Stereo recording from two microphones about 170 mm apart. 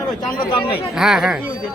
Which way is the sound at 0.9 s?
5° right (ahead or behind).